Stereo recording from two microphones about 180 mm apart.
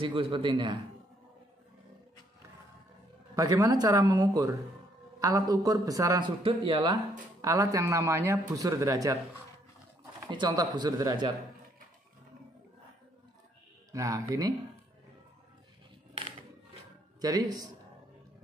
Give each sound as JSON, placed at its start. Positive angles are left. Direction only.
{"t": 0.0, "sound": "a man's voice", "side_deg": -30}
{"t": 3.3, "sound": "a man's voice", "side_deg": -20}
{"t": 10.2, "sound": "a man's voice", "side_deg": -25}
{"t": 13.9, "sound": "a man's voice", "side_deg": -20}
{"t": 17.2, "sound": "a man's voice", "side_deg": -20}